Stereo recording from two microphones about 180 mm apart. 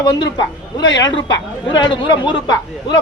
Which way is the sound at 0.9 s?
20° left (ahead or behind).